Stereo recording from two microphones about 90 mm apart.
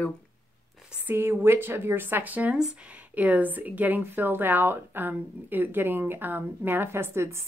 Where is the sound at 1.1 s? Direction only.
25° right (ahead or behind).